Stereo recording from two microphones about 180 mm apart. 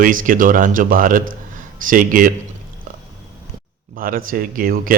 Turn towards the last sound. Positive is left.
turn(degrees=-50)  # may be behind; listen again after turning